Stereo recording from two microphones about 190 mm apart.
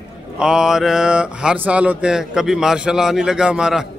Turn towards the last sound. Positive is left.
turn(degrees=-5)  # may be behind; listen again after turning